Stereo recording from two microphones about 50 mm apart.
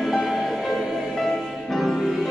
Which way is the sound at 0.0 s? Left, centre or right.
Centre.